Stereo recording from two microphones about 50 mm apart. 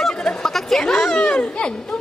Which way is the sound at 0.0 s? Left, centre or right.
Centre.